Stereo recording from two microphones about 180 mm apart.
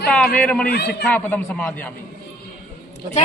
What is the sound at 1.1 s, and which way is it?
Speech, 10° left (ahead or behind).